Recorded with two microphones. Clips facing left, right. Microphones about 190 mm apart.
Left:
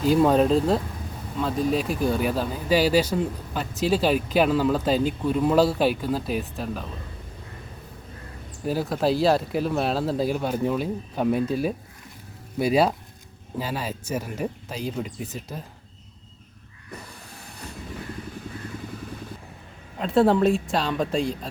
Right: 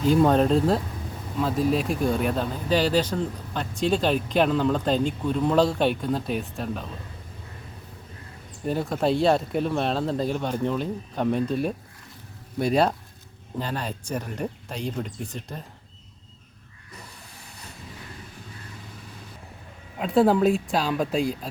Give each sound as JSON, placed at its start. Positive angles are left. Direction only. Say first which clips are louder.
{"t": 0.0, "sound": "speech", "louder": "left 1 dB", "side_deg": 0}
{"t": 8.6, "sound": "speech", "louder": "left 1 dB", "side_deg": 5}
{"t": 20.0, "sound": "speech", "louder": "even", "side_deg": 0}